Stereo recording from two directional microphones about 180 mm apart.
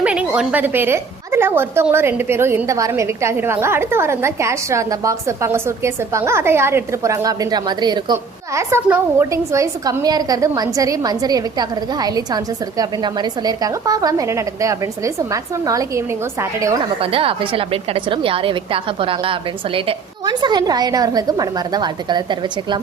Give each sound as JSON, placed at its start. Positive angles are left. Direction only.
{"t": 0.0, "sound": "a woman's voice", "side_deg": -5}
{"t": 17.0, "sound": "a woman's voice", "side_deg": -30}